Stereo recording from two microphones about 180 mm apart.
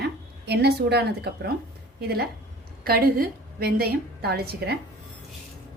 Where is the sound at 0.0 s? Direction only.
65° right (ahead or behind).